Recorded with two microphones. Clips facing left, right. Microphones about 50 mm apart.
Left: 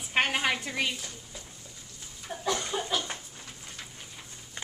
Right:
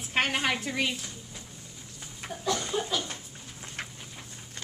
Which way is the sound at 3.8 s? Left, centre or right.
Right.